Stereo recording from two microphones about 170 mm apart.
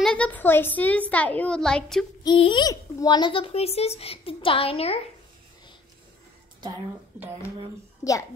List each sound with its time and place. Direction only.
0.0 s a woman's voice: 5° left (ahead or behind)
2.2 s a child's voice: 30° left (ahead or behind)
8.0 s a child's voice: 20° left (ahead or behind)